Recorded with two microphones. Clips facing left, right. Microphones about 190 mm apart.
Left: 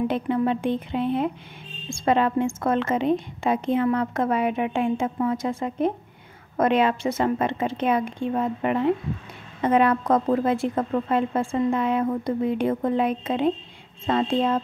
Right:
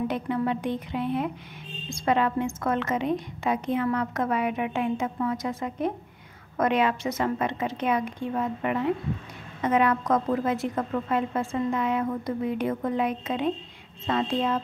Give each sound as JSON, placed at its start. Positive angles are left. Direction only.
{"t": 0.1, "sound": "a woman's voice", "side_deg": 30}